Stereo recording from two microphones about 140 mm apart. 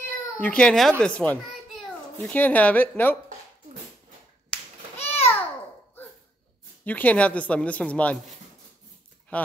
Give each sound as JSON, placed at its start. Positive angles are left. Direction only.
{"t": 0.4, "sound": "speech", "side_deg": 10}
{"t": 4.9, "sound": "babbling", "side_deg": 45}
{"t": 6.8, "sound": "speech", "side_deg": 10}
{"t": 9.3, "sound": "speech", "side_deg": 10}